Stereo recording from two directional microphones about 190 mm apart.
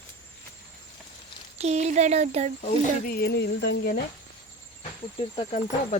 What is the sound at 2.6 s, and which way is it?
Speech, 45° left (ahead or behind).